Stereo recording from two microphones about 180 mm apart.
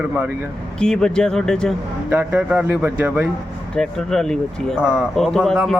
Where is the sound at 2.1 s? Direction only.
10° right (ahead or behind).